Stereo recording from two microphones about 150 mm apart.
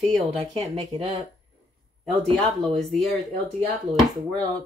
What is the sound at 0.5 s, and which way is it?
Speech, 45° right (ahead or behind).